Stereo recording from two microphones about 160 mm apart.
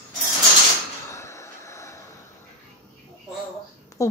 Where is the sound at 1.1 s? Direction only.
20° left (ahead or behind).